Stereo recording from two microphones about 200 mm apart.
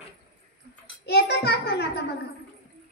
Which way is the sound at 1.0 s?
55° left (ahead or behind).